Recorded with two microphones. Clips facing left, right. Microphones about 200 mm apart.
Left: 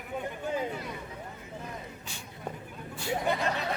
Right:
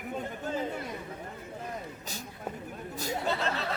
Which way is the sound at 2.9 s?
40° right (ahead or behind).